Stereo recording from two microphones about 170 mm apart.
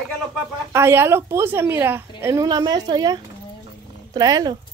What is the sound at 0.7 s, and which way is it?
A woman's voice, 15° right (ahead or behind).